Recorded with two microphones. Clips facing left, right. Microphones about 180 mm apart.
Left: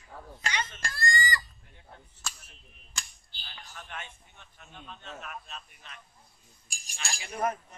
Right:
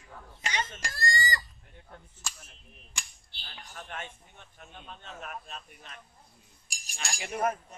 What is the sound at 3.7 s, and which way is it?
A man's voice, 45° right (ahead or behind).